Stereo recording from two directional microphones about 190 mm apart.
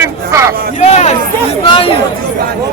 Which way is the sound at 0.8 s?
35° left (ahead or behind).